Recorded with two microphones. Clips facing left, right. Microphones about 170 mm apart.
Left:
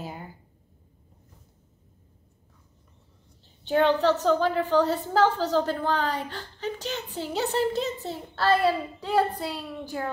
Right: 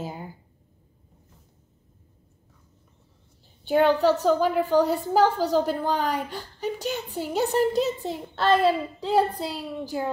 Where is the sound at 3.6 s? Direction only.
10° right (ahead or behind).